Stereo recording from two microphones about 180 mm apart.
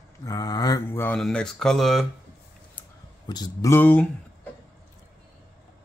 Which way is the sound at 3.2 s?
20° left (ahead or behind).